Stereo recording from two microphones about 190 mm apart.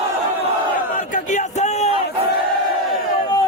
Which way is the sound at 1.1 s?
40° left (ahead or behind).